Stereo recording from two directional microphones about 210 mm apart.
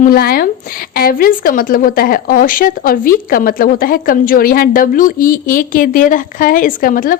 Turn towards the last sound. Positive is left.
turn(degrees=40)  # may be behind; listen again after turning